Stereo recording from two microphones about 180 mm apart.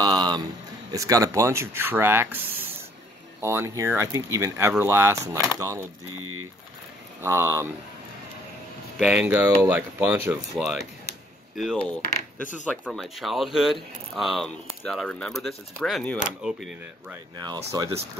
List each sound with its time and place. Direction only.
0.0 s a sound: 25° right (ahead or behind)
0.9 s speech: 20° right (ahead or behind)
7.2 s speech: 15° right (ahead or behind)
8.9 s speech: 5° right (ahead or behind)